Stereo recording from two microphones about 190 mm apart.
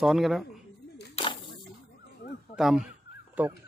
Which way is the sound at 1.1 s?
25° left (ahead or behind).